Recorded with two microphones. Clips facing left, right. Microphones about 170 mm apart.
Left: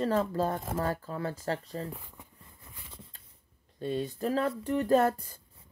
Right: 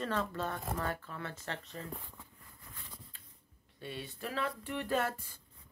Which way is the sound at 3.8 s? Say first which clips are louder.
Left 11 dB; 40° left (ahead or behind).